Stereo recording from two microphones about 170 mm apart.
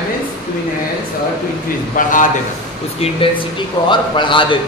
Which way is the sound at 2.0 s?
50° left (ahead or behind).